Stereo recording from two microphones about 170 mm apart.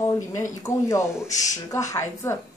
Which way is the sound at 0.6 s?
20° left (ahead or behind).